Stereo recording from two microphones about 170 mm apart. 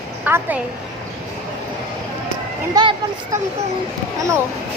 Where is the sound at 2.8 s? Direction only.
25° right (ahead or behind).